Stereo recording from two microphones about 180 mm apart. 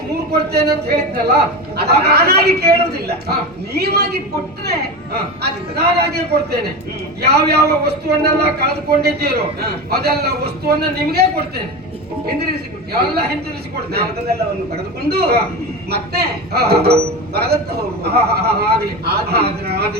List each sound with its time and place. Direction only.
0.3 s a man's voice: 65° right (ahead or behind)
13.9 s a man's voice: 60° right (ahead or behind)